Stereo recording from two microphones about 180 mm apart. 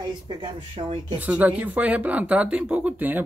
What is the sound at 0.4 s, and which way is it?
Speech, 35° right (ahead or behind).